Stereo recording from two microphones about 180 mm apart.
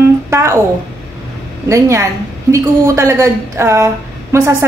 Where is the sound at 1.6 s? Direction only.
20° right (ahead or behind).